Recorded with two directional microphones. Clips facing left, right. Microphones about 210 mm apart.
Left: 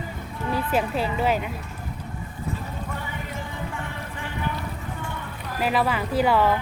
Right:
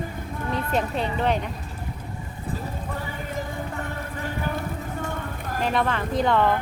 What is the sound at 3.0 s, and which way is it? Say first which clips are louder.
Music: right 2 dB; 40° right (ahead or behind).